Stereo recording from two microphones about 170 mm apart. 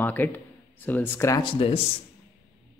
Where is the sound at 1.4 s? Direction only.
30° left (ahead or behind).